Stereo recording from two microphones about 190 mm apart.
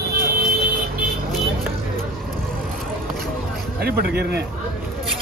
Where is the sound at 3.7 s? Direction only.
55° right (ahead or behind).